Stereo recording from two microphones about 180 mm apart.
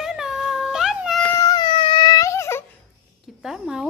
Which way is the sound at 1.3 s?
20° left (ahead or behind).